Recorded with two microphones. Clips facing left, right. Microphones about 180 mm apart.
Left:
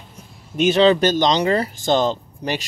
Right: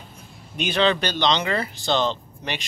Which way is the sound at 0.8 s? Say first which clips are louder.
Left 5 dB; 40° left (ahead or behind).